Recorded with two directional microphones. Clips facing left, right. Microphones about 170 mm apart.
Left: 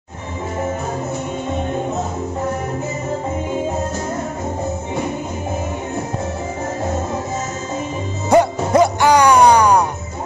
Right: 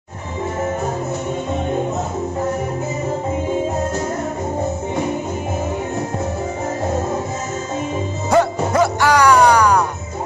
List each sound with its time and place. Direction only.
8.3 s music: 20° left (ahead or behind)